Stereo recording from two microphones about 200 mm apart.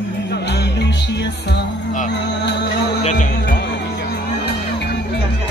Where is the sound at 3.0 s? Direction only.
40° left (ahead or behind).